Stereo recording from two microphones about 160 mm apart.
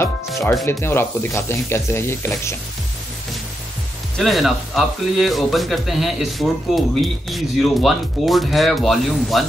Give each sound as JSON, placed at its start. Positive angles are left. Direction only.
{"t": 0.7, "sound": "speech", "side_deg": 15}
{"t": 4.2, "sound": "a man's voice", "side_deg": 0}